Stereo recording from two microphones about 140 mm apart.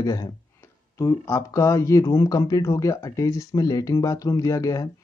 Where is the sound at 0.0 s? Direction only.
25° left (ahead or behind).